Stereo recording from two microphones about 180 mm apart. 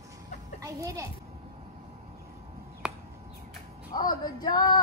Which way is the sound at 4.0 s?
20° left (ahead or behind).